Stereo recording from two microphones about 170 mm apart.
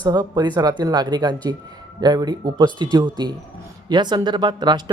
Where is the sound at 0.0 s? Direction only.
25° right (ahead or behind).